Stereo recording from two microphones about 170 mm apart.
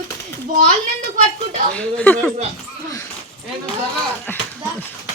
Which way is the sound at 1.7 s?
5° left (ahead or behind).